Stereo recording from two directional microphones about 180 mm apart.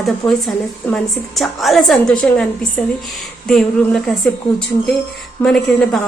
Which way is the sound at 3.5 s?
5° left (ahead or behind).